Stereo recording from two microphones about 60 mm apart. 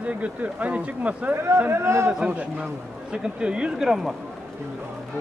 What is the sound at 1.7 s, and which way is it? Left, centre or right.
Speech, right.